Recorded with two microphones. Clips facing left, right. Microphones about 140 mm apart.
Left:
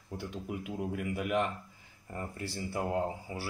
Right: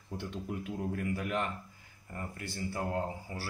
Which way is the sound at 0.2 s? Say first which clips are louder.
Even; 10° left (ahead or behind).